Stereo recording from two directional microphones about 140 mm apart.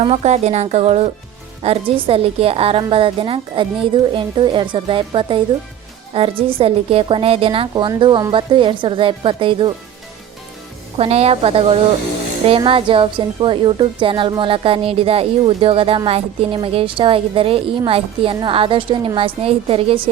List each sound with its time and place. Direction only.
0.0 s speech: 50° right (ahead or behind)
10.9 s speech: 45° right (ahead or behind)